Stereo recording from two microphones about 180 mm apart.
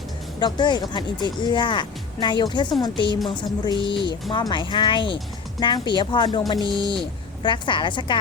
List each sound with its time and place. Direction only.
0.3 s speech: 25° left (ahead or behind)